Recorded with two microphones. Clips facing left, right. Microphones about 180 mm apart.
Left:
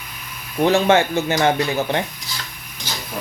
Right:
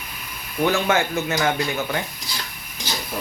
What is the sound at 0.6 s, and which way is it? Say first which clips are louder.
A man's voice: left 5 dB; 30° left (ahead or behind).